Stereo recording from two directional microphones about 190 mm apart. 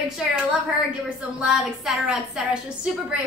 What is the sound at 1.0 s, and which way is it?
A woman's voice, 5° right (ahead or behind).